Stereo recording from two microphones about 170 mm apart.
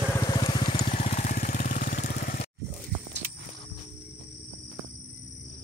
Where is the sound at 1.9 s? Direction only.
50° left (ahead or behind).